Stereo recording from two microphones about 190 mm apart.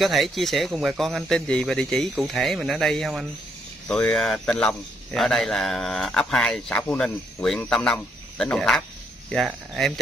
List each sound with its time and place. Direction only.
0.0 s a man's voice: centre (ahead or behind)